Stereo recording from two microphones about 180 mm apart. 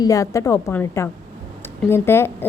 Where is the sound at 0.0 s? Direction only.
20° left (ahead or behind).